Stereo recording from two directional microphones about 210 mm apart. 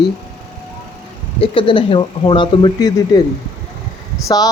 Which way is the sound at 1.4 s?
25° left (ahead or behind).